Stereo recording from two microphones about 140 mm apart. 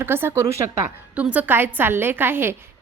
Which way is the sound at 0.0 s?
15° right (ahead or behind).